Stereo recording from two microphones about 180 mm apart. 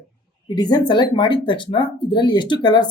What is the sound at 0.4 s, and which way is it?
Speech, 25° left (ahead or behind).